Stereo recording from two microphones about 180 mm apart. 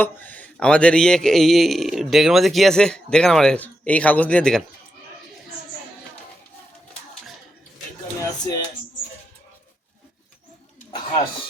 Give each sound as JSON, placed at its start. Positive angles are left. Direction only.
{"t": 0.0, "sound": "speech", "side_deg": 10}
{"t": 8.2, "sound": "speech", "side_deg": 20}